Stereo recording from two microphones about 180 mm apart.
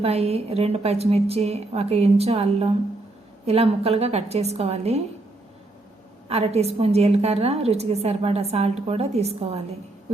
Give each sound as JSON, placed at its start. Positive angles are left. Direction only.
{"t": 0.0, "sound": "a woman's voice", "side_deg": -35}
{"t": 6.2, "sound": "a woman's voice", "side_deg": -35}